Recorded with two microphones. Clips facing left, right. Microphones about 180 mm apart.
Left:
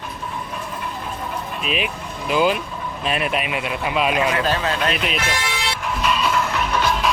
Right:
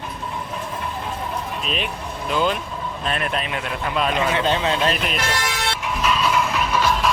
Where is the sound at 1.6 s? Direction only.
5° left (ahead or behind).